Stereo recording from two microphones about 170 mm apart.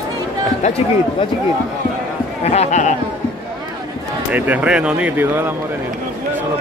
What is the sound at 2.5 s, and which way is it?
Speech, 45° left (ahead or behind).